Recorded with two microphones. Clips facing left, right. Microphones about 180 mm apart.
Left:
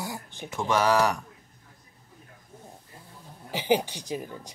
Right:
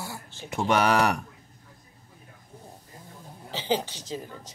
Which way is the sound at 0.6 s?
65° right (ahead or behind).